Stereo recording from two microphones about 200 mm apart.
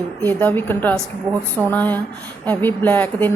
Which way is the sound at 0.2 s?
10° left (ahead or behind).